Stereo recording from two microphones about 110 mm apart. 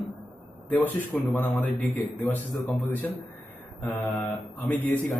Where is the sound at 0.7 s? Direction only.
15° left (ahead or behind).